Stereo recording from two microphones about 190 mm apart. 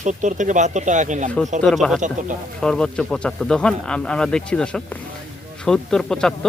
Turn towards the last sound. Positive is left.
turn(degrees=5)  # may be behind; listen again after turning